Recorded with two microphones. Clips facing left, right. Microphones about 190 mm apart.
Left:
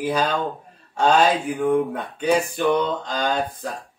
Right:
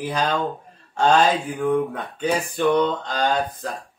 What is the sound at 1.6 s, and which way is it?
Speech, 10° left (ahead or behind).